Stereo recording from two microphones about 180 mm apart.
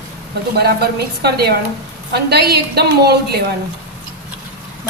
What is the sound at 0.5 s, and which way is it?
A woman's voice, 60° right (ahead or behind).